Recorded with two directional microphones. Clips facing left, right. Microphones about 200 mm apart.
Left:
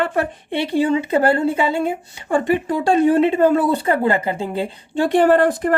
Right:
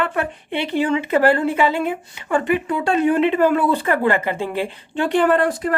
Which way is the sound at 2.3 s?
35° left (ahead or behind).